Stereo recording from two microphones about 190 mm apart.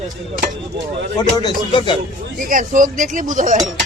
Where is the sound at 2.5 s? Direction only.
45° right (ahead or behind).